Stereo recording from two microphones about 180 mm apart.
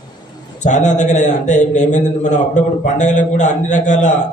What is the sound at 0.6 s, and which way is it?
A man's voice, 40° left (ahead or behind).